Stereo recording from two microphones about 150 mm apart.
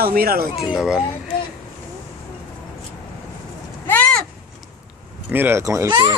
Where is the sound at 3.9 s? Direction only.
10° left (ahead or behind).